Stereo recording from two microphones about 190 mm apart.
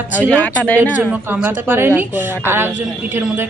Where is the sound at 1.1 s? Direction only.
5° right (ahead or behind).